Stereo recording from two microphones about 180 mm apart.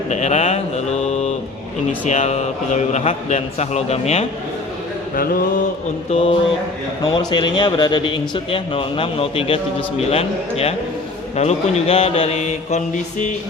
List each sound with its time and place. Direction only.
0.1 s mantra: 40° left (ahead or behind)
1.9 s a man's voice: 40° left (ahead or behind)
5.1 s mantra: 55° left (ahead or behind)
6.1 s a man's voice: 35° left (ahead or behind)